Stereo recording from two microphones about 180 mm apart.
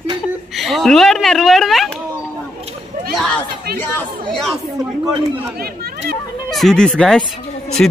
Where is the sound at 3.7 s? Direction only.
10° left (ahead or behind).